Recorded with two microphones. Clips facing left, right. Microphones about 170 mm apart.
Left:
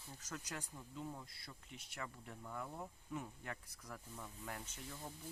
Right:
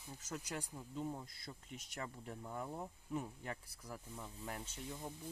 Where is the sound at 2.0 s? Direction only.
30° right (ahead or behind).